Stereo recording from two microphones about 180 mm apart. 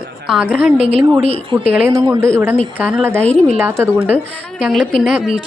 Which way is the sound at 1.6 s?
10° right (ahead or behind).